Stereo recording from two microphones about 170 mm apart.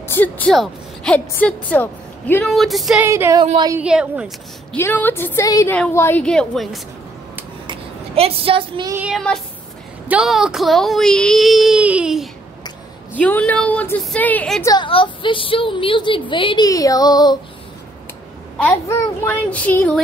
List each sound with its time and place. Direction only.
0.1 s a woman's voice: 10° left (ahead or behind)
2.5 s speech: centre (ahead or behind)
3.1 s a woman's voice: 15° right (ahead or behind)
3.7 s a woman's voice: 5° right (ahead or behind)
4.7 s a woman's voice: 15° left (ahead or behind)
7.6 s a sound: 30° right (ahead or behind)
8.9 s a woman's voice: 10° right (ahead or behind)
13.1 s a woman's voice: 10° left (ahead or behind)
14.7 s a woman's voice: 30° left (ahead or behind)
18.6 s a woman's voice: 15° left (ahead or behind)